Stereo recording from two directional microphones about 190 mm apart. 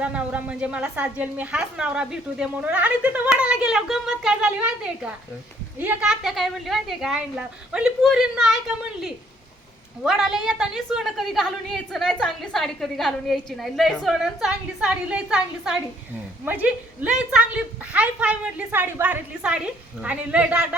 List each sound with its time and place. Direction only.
0.0 s a woman's voice: 5° right (ahead or behind)